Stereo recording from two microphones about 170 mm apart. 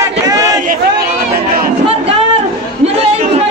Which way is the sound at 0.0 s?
20° right (ahead or behind).